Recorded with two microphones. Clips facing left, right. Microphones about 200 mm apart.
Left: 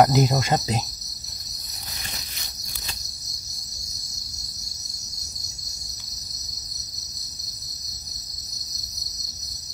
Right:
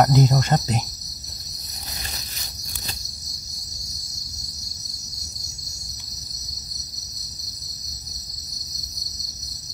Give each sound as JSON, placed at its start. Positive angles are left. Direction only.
{"t": 0.0, "sound": "speech", "side_deg": 10}